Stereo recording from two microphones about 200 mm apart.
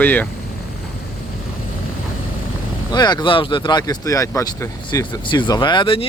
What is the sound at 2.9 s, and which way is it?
Speech, 20° left (ahead or behind).